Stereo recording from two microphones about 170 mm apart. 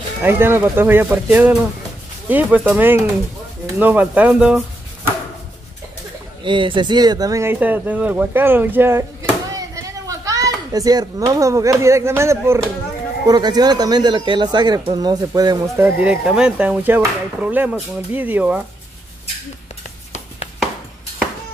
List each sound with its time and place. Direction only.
0.2 s speech: 15° right (ahead or behind)
6.4 s speech: 30° right (ahead or behind)
15.8 s speech: 5° right (ahead or behind)